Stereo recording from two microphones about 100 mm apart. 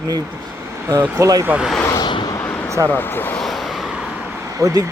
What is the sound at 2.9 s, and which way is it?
Speech, 20° left (ahead or behind).